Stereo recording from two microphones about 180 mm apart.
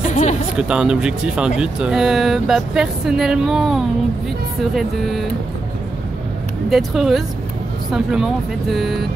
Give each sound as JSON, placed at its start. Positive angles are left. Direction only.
{"t": 0.0, "sound": "a sound", "side_deg": 40}
{"t": 0.6, "sound": "speech", "side_deg": -5}
{"t": 6.7, "sound": "speech", "side_deg": 0}